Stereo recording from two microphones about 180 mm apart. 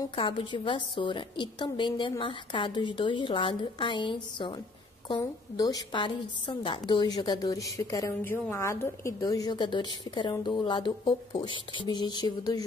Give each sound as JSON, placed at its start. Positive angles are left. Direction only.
{"t": 0.0, "sound": "a woman's voice", "side_deg": 30}